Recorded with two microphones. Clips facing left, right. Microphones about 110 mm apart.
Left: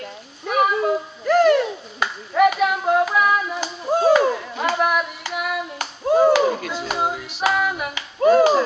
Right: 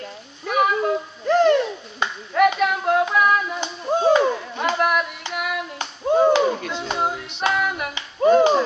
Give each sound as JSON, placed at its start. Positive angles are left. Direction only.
{"t": 0.5, "sound": "a sound", "side_deg": 0}
{"t": 1.2, "sound": "bird", "side_deg": -25}
{"t": 1.5, "sound": "clapping", "side_deg": 5}
{"t": 4.2, "sound": "a sound", "side_deg": 5}
{"t": 5.3, "sound": "clapping", "side_deg": 0}
{"t": 8.2, "sound": "music", "side_deg": 5}